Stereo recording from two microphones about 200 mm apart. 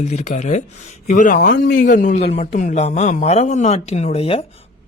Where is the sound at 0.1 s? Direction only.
35° left (ahead or behind).